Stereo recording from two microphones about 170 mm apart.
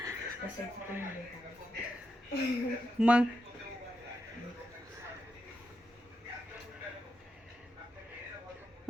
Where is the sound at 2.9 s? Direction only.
5° right (ahead or behind).